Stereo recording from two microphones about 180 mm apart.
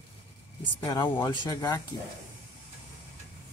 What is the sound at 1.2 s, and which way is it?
Speech, 20° left (ahead or behind).